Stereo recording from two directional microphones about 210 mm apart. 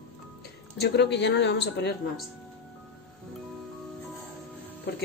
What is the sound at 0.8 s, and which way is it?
Speech, 55° left (ahead or behind).